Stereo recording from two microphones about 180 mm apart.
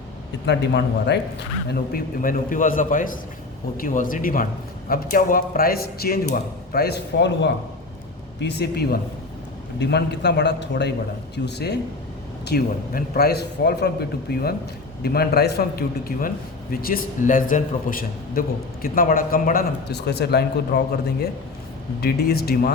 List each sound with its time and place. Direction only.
0.4 s a man's voice: 70° left (ahead or behind)
1.7 s a man's voice: 55° left (ahead or behind)
22.0 s speech: 60° left (ahead or behind)